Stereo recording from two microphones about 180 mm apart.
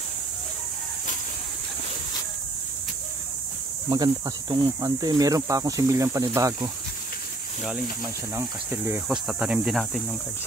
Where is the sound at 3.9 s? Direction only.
20° right (ahead or behind).